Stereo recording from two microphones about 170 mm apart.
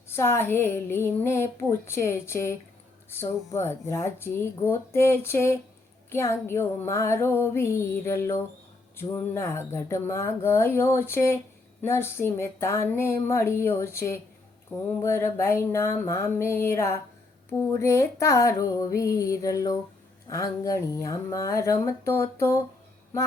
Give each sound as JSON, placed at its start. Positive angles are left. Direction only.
{"t": 0.1, "sound": "speech", "side_deg": 15}
{"t": 14.7, "sound": "mantra", "side_deg": -5}
{"t": 15.0, "sound": "speech", "side_deg": 15}
{"t": 17.6, "sound": "a sound", "side_deg": 15}
{"t": 20.3, "sound": "speech", "side_deg": 20}